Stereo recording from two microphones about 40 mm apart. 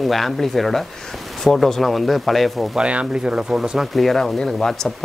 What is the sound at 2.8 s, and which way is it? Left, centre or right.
Speech, right.